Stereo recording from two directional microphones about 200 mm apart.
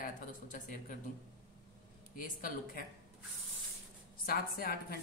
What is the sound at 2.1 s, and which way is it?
Speech, 45° left (ahead or behind).